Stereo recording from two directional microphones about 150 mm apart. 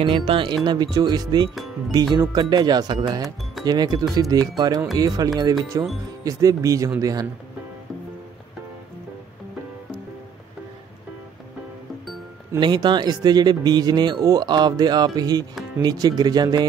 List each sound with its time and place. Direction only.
0.0 s speech: 35° right (ahead or behind)
12.5 s speech: 30° right (ahead or behind)